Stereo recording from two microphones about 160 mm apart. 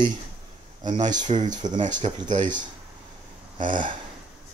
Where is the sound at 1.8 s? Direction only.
50° right (ahead or behind).